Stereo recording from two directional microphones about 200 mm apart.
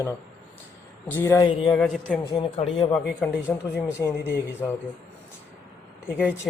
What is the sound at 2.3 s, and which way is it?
Speech, 25° left (ahead or behind).